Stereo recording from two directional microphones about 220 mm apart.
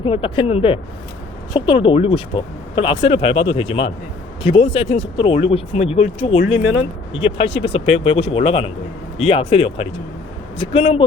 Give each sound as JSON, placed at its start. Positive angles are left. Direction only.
{"t": 0.0, "sound": "speech", "side_deg": 25}
{"t": 6.6, "sound": "speech", "side_deg": 60}
{"t": 7.1, "sound": "speech", "side_deg": 25}